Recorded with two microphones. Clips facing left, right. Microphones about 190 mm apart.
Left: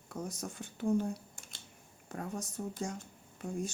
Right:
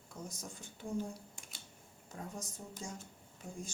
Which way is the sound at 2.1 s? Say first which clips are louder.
Left 6 dB; 65° left (ahead or behind).